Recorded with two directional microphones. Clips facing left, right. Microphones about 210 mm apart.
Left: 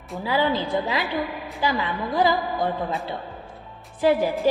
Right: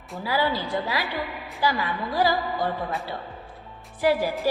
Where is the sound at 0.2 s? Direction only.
20° left (ahead or behind).